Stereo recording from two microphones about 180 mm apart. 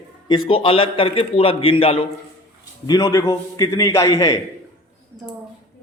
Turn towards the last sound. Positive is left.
turn(degrees=20)  # may be behind; listen again after turning